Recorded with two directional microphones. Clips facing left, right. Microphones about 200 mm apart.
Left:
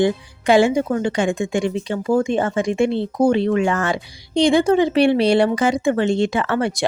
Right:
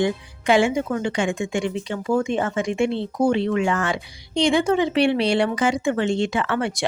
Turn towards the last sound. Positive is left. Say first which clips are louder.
# left 3 dB
turn(degrees=40)  # may be behind; listen again after turning